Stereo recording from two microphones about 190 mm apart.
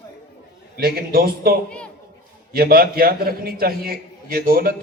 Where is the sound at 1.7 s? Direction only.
5° left (ahead or behind).